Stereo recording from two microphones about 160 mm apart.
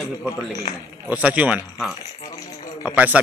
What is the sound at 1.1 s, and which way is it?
Speech, 10° right (ahead or behind).